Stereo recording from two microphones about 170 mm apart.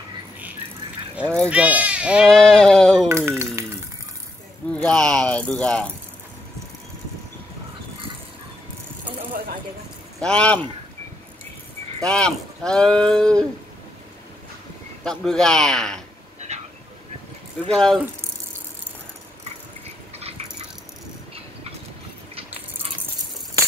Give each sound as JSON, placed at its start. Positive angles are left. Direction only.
{"t": 1.2, "sound": "speech", "side_deg": 5}
{"t": 1.5, "sound": "speech", "side_deg": -10}
{"t": 3.1, "sound": "speech", "side_deg": -15}
{"t": 4.7, "sound": "speech", "side_deg": 5}
{"t": 10.2, "sound": "speech", "side_deg": 5}
{"t": 12.0, "sound": "speech", "side_deg": 5}
{"t": 15.0, "sound": "speech", "side_deg": 5}
{"t": 16.3, "sound": "train", "side_deg": -40}
{"t": 17.7, "sound": "speech", "side_deg": 0}